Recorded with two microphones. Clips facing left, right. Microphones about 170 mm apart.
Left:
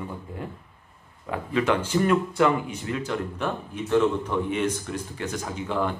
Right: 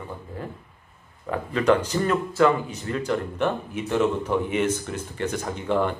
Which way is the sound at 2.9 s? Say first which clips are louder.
Right 3 dB; centre (ahead or behind).